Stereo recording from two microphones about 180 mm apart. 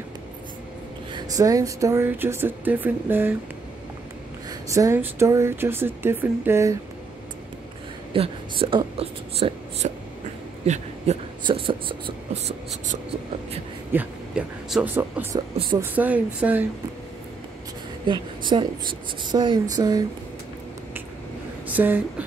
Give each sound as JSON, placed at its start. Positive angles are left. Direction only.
{"t": 1.1, "sound": "speech", "side_deg": -20}
{"t": 4.5, "sound": "speech", "side_deg": -15}
{"t": 8.1, "sound": "speech", "side_deg": -30}
{"t": 12.4, "sound": "speech", "side_deg": -40}
{"t": 13.9, "sound": "speech", "side_deg": -5}
{"t": 15.3, "sound": "speech", "side_deg": -25}
{"t": 15.8, "sound": "speech", "side_deg": -10}
{"t": 18.0, "sound": "speech", "side_deg": -25}
{"t": 21.6, "sound": "speech", "side_deg": -10}